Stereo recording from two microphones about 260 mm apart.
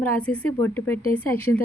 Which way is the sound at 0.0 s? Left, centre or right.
Centre.